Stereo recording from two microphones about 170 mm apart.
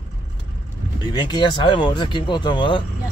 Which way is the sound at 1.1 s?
25° left (ahead or behind).